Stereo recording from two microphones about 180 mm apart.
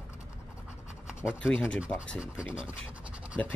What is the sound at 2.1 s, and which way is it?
Speech, 5° right (ahead or behind).